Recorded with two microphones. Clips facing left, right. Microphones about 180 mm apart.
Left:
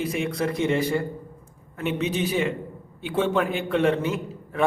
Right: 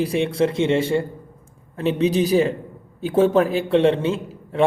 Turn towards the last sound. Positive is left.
turn(degrees=-30)  # may be behind; listen again after turning